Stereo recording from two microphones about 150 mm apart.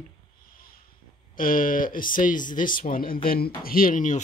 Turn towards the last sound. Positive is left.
turn(degrees=60)  # may be behind; listen again after turning